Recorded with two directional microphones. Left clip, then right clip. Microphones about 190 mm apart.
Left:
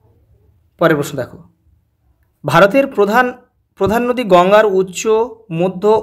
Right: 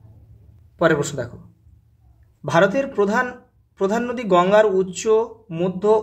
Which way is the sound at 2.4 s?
35° left (ahead or behind).